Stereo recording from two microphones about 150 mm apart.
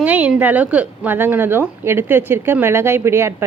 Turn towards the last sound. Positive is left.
turn(degrees=-15)  # may be behind; listen again after turning